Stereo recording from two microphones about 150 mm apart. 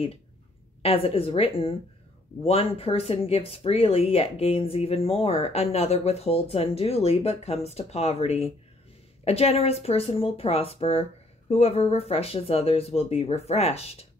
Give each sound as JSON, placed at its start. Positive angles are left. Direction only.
{"t": 0.8, "sound": "speech", "side_deg": 40}